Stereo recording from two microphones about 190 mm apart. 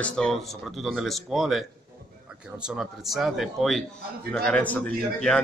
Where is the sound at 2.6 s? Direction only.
5° right (ahead or behind).